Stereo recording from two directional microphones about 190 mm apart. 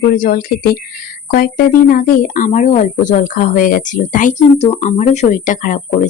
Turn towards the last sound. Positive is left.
turn(degrees=40)  # may be behind; listen again after turning